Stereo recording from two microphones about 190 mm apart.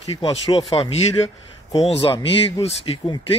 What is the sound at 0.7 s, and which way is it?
Speech, 30° left (ahead or behind).